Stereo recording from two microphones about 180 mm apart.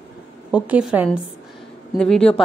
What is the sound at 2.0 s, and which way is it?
Speech, 5° left (ahead or behind).